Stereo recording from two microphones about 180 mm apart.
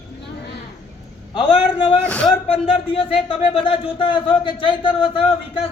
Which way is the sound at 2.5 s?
30° left (ahead or behind).